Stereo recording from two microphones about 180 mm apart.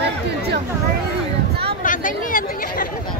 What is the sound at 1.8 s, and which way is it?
Chatter, 45° left (ahead or behind).